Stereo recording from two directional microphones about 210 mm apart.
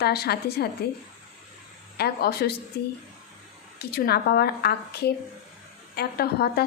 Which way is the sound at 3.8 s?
50° left (ahead or behind).